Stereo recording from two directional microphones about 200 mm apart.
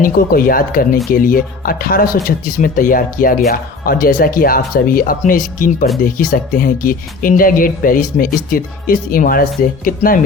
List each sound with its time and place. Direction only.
0.0 s speech: 45° left (ahead or behind)